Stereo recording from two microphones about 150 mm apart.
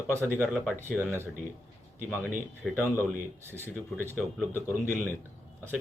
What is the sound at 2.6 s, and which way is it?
Speech, 5° left (ahead or behind).